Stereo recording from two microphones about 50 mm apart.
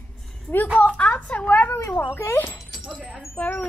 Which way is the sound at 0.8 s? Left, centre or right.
Left.